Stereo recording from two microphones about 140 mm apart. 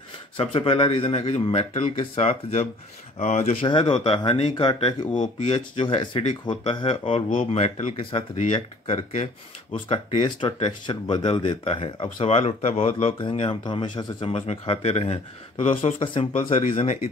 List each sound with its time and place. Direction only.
0.4 s speech: 45° left (ahead or behind)
3.6 s speech: 35° left (ahead or behind)
5.1 s speech: 60° left (ahead or behind)
5.5 s speech: 40° left (ahead or behind)
8.5 s speech: 35° left (ahead or behind)
9.1 s speech: 50° left (ahead or behind)
10.1 s speech: 35° left (ahead or behind)
16.7 s speech: 50° left (ahead or behind)